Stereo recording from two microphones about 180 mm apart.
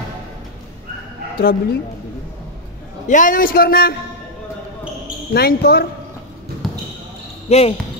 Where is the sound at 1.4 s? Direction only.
55° left (ahead or behind).